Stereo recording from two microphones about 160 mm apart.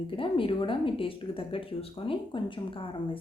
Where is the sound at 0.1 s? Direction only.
35° left (ahead or behind).